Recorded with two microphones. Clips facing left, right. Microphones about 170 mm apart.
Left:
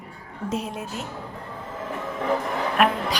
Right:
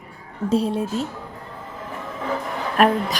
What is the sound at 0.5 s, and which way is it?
Speech, 30° right (ahead or behind).